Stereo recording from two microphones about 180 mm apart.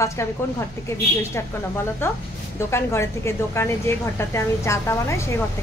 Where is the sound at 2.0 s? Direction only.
15° left (ahead or behind).